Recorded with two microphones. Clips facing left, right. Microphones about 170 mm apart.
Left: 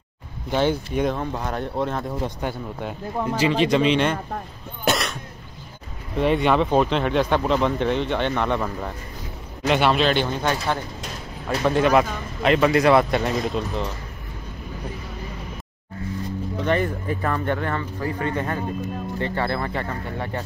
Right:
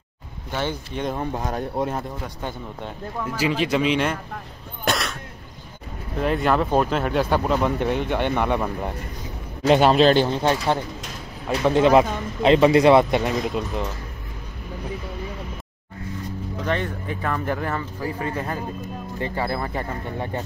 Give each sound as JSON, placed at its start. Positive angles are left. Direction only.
{"t": 0.5, "sound": "speech", "side_deg": 15}
{"t": 1.1, "sound": "speech", "side_deg": -20}
{"t": 3.3, "sound": "speech", "side_deg": -5}
{"t": 4.8, "sound": "cough", "side_deg": 0}
{"t": 6.1, "sound": "speech", "side_deg": 0}
{"t": 9.7, "sound": "speech", "side_deg": -35}
{"t": 11.4, "sound": "speech", "side_deg": -15}
{"t": 13.2, "sound": "speech", "side_deg": -10}
{"t": 16.5, "sound": "speech", "side_deg": 5}